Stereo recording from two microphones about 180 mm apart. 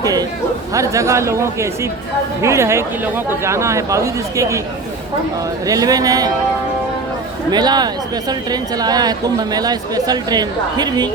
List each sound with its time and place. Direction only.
0.0 s chatter: 20° right (ahead or behind)
0.7 s speech: 15° right (ahead or behind)
5.6 s a woman's voice: 20° right (ahead or behind)
7.5 s a woman's voice: 25° right (ahead or behind)